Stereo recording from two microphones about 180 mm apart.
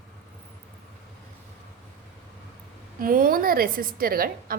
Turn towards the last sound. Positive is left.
turn(degrees=-55)  # may be behind; listen again after turning